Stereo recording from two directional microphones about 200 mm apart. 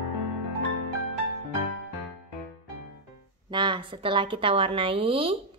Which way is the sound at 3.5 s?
25° right (ahead or behind).